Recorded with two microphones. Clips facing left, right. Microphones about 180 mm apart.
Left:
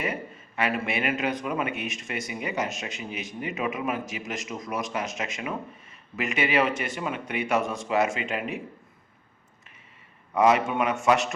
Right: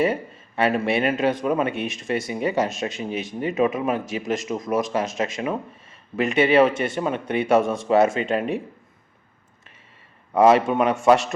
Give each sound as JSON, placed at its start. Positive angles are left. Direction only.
{"t": 0.0, "sound": "speech", "side_deg": -30}
{"t": 10.3, "sound": "speech", "side_deg": -30}